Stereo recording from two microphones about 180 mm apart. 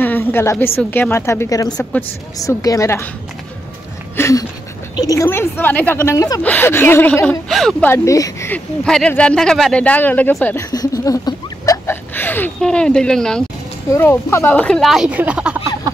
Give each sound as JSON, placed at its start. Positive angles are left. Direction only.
{"t": 0.0, "sound": "speech", "side_deg": 10}
{"t": 1.8, "sound": "speech", "side_deg": 10}
{"t": 2.3, "sound": "speech", "side_deg": 20}
{"t": 4.2, "sound": "speech", "side_deg": 15}
{"t": 7.9, "sound": "speech", "side_deg": 15}
{"t": 10.7, "sound": "a sound", "side_deg": 20}
{"t": 13.8, "sound": "speech", "side_deg": 15}